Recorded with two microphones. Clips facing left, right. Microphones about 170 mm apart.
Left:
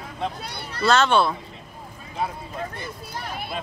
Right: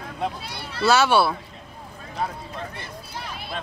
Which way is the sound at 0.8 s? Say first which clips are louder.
Right 1 dB; 10° right (ahead or behind).